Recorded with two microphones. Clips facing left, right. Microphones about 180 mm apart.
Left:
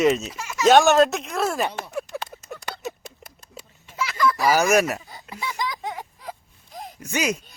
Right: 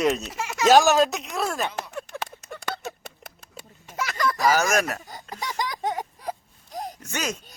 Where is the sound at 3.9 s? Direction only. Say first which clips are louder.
Left 3 dB; 45° right (ahead or behind).